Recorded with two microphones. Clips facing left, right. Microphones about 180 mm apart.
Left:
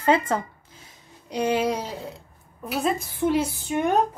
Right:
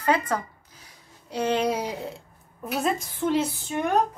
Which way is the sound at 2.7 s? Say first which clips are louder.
Left 1 dB; 5° left (ahead or behind).